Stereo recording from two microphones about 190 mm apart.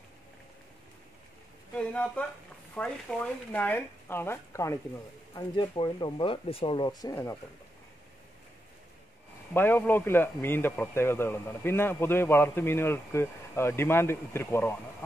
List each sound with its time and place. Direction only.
1.8 s a man's voice: 5° left (ahead or behind)
9.5 s a man's voice: 10° left (ahead or behind)